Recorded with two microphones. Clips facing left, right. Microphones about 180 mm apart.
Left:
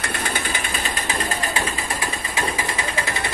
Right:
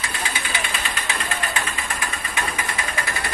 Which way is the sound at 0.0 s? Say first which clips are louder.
Left 3 dB; 55° left (ahead or behind).